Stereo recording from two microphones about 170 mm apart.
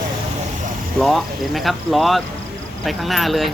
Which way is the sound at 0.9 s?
Centre (ahead or behind).